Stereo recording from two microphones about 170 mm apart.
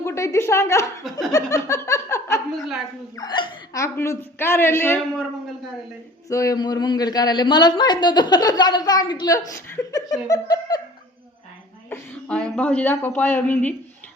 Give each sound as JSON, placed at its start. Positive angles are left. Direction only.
{"t": 0.0, "sound": "speech", "side_deg": 15}
{"t": 1.3, "sound": "laughter", "side_deg": 20}
{"t": 3.2, "sound": "speech", "side_deg": 25}
{"t": 6.2, "sound": "a man's voice", "side_deg": 20}
{"t": 11.9, "sound": "speech", "side_deg": 5}